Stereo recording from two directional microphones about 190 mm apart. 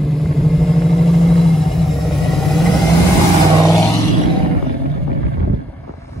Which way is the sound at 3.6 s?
15° left (ahead or behind).